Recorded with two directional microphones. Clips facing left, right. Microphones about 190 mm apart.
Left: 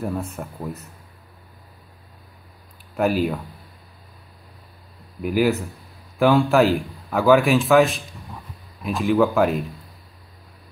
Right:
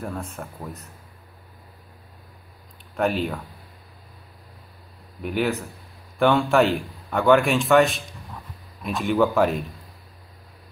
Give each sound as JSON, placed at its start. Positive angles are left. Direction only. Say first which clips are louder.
{"t": 0.0, "sound": "a man's voice", "louder": "left 5 dB", "side_deg": 5}
{"t": 3.0, "sound": "a man's voice", "louder": "left 3 dB", "side_deg": 0}
{"t": 5.2, "sound": "a man's voice", "louder": "left 5 dB", "side_deg": 0}